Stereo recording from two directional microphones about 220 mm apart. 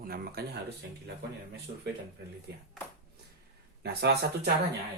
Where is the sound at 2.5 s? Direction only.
45° right (ahead or behind).